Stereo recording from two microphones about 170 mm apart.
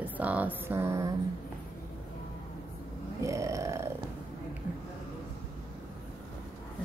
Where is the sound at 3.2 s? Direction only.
20° right (ahead or behind).